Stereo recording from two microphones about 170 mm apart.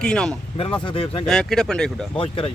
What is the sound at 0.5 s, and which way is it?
Speech, 30° left (ahead or behind).